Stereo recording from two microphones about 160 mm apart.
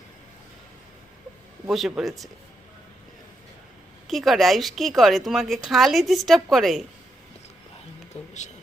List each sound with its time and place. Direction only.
1.7 s speech: centre (ahead or behind)
4.0 s speech: centre (ahead or behind)
8.1 s a sound: 45° left (ahead or behind)